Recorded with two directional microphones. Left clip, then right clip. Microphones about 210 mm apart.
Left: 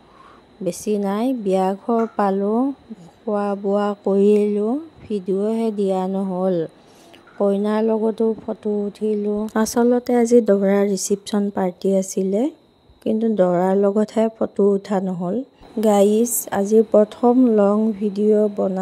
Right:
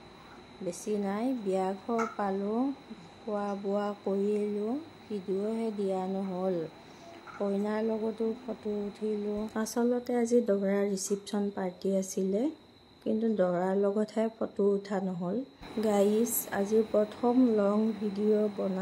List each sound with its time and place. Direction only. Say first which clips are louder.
0.7 s speech: left 11 dB; 40° left (ahead or behind)